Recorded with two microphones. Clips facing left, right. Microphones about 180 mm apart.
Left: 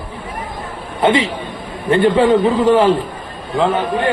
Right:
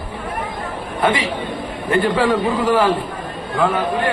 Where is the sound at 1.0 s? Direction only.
25° left (ahead or behind).